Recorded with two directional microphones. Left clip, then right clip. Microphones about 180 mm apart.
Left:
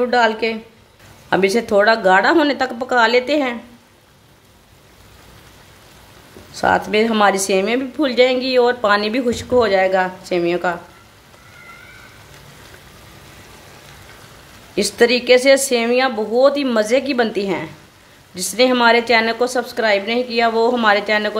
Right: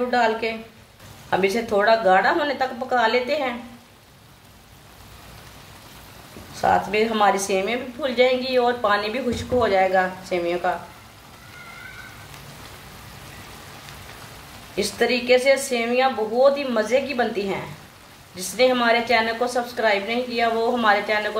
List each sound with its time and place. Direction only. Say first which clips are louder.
0.1 s speech: left 5 dB; 60° left (ahead or behind)
6.5 s speech: left 4 dB; 60° left (ahead or behind)
14.8 s speech: left 7 dB; 60° left (ahead or behind)